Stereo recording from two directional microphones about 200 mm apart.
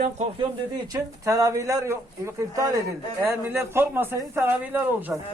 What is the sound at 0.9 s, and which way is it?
A man's voice, 15° right (ahead or behind).